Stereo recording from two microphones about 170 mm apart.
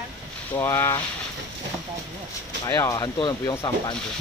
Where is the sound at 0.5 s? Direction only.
15° left (ahead or behind).